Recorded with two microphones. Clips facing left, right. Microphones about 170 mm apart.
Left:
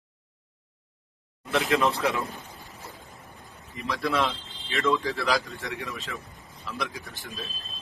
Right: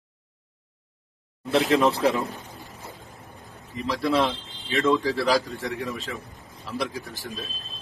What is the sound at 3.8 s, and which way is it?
A man's voice, 30° right (ahead or behind).